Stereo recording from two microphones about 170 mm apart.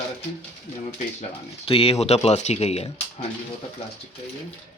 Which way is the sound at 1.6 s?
35° left (ahead or behind).